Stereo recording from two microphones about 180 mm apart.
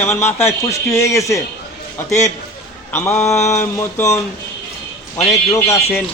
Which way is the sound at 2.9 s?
15° left (ahead or behind).